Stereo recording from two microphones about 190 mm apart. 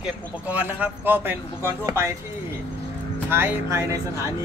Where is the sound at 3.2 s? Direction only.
10° right (ahead or behind).